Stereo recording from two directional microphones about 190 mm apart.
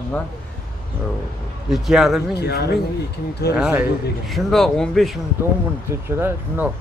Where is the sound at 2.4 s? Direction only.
60° left (ahead or behind).